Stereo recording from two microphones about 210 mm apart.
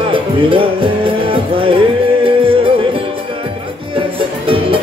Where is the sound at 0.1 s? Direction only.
25° right (ahead or behind).